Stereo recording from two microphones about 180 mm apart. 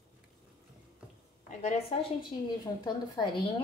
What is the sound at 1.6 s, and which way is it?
A woman's voice, 35° left (ahead or behind).